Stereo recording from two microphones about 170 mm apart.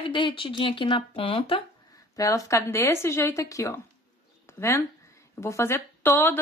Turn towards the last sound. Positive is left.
turn(degrees=15)  # may be behind; listen again after turning